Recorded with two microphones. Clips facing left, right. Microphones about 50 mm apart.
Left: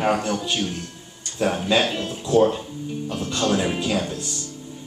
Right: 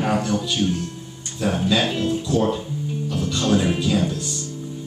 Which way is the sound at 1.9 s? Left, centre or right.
Centre.